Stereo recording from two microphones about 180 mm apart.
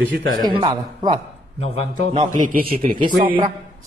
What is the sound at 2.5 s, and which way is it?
Speech, 50° right (ahead or behind).